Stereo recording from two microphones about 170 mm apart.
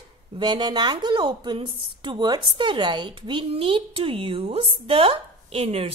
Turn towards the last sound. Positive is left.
turn(degrees=-35)  # may be behind; listen again after turning